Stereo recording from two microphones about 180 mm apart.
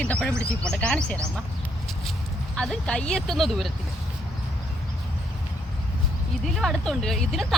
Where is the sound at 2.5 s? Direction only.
5° left (ahead or behind).